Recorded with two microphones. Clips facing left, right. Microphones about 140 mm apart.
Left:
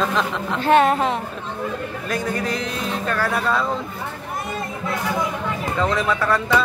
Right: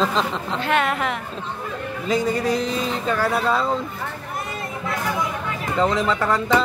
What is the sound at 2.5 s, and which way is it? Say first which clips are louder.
Speech: right 3 dB; 65° left (ahead or behind).